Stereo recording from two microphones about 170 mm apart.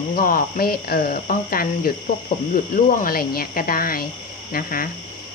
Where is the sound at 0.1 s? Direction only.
55° left (ahead or behind).